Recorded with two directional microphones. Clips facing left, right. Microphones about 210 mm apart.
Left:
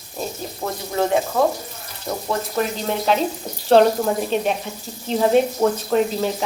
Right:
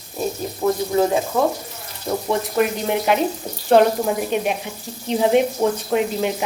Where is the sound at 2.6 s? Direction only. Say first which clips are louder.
Right 4 dB; 15° right (ahead or behind).